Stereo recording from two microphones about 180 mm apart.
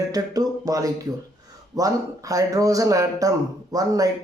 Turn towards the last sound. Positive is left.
turn(degrees=-20)  # may be behind; listen again after turning